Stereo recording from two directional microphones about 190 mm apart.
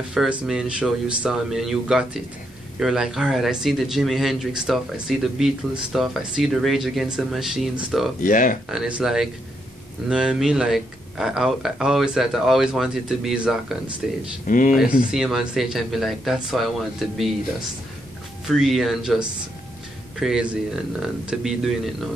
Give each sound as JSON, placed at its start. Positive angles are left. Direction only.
{"t": 0.1, "sound": "speech", "side_deg": -5}
{"t": 8.2, "sound": "speech", "side_deg": 45}
{"t": 8.6, "sound": "speech", "side_deg": -5}
{"t": 14.5, "sound": "speech", "side_deg": 45}
{"t": 15.0, "sound": "speech", "side_deg": 0}
{"t": 18.5, "sound": "speech", "side_deg": 0}